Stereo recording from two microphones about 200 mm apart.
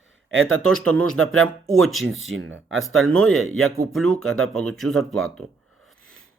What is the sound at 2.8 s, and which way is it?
Speech, centre (ahead or behind).